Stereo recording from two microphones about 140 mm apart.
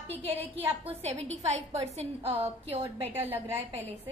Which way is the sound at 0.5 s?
45° right (ahead or behind).